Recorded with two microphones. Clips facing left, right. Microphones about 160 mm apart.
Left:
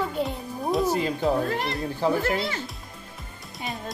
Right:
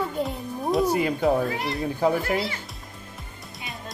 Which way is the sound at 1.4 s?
20° right (ahead or behind).